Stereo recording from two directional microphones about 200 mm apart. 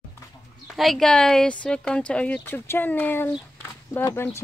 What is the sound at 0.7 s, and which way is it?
Speech, centre (ahead or behind).